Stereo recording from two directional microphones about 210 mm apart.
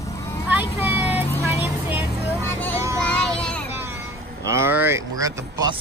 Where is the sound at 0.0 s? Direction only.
15° left (ahead or behind).